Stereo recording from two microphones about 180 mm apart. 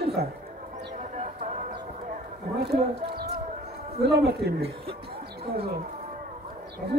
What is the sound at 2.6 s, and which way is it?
Speech, 60° right (ahead or behind).